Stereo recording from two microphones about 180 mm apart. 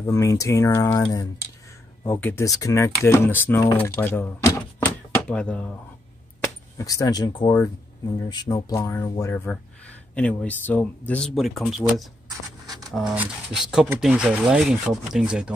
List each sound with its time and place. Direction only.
0.0 s speech: 15° left (ahead or behind)
6.8 s speech: 20° left (ahead or behind); by 15.5 s 5° right (ahead or behind)